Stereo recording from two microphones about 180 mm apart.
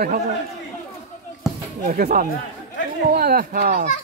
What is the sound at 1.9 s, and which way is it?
Speech, 50° right (ahead or behind).